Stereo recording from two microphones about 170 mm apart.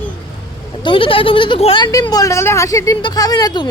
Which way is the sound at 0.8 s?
30° left (ahead or behind).